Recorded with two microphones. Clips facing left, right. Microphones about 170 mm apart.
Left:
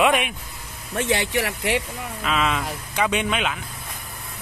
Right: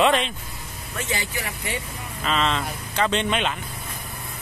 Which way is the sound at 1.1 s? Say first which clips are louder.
Left 8 dB; 75° left (ahead or behind).